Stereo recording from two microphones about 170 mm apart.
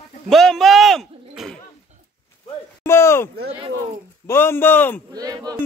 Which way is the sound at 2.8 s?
15° left (ahead or behind).